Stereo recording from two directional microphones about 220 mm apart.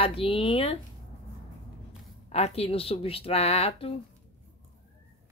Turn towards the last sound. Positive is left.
turn(degrees=25)  # may be behind; listen again after turning